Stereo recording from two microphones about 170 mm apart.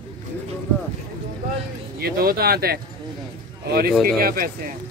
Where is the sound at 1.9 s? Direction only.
60° right (ahead or behind).